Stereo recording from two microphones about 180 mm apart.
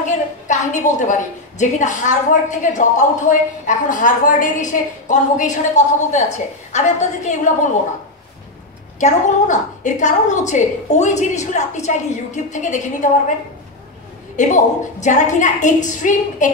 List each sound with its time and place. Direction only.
0.5 s a woman's voice: 45° left (ahead or behind)
9.0 s a woman's voice: 45° left (ahead or behind)
14.3 s a woman's voice: 45° left (ahead or behind)